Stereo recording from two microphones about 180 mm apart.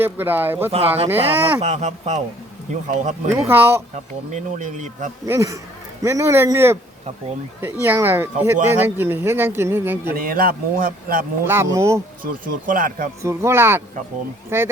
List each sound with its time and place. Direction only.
0.0 s speech: 10° right (ahead or behind)
0.7 s speech: 35° right (ahead or behind)
3.5 s speech: 10° right (ahead or behind)
3.9 s speech: 40° right (ahead or behind)
5.2 s speech: 15° right (ahead or behind)
10.1 s speech: 55° right (ahead or behind)
11.4 s speech: 15° right (ahead or behind)
12.2 s speech: 50° right (ahead or behind)
13.2 s speech: 15° right (ahead or behind)